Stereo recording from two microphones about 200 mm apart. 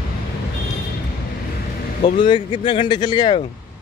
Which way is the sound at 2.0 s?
25° left (ahead or behind).